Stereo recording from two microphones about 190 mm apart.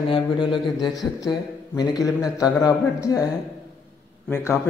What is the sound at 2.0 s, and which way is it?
A man's voice, 20° left (ahead or behind).